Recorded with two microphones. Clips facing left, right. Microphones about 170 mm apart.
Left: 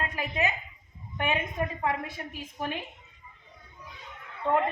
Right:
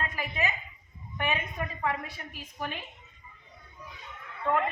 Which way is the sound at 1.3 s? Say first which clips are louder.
Left 4 dB; 20° left (ahead or behind).